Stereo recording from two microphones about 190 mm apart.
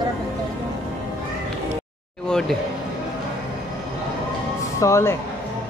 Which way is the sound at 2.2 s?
5° left (ahead or behind).